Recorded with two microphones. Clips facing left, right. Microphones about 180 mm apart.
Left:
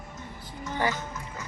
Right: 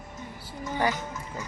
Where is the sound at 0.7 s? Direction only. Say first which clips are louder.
Right 1 dB; 15° right (ahead or behind).